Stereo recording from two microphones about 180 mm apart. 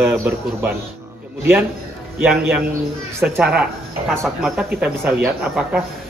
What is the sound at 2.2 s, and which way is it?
Speech, 10° right (ahead or behind).